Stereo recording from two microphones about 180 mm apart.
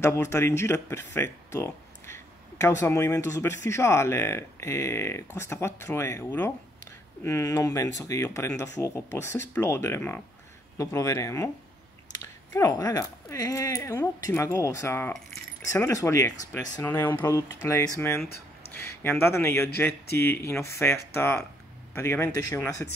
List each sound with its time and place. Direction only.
0.0 s speech: 15° left (ahead or behind)
12.5 s speech: 20° left (ahead or behind)